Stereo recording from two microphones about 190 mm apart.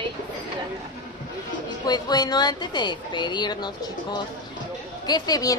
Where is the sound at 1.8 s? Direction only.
20° left (ahead or behind).